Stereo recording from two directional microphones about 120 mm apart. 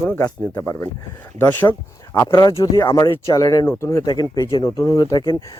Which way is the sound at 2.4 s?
30° left (ahead or behind).